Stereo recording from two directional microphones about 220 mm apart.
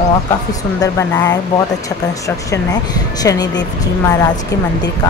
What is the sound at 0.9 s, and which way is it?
Speech, 15° left (ahead or behind).